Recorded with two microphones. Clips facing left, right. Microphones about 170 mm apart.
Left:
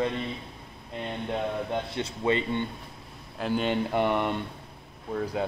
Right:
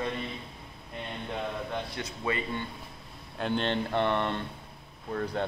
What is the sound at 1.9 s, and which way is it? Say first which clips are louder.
Speech: left 6 dB; 25° left (ahead or behind).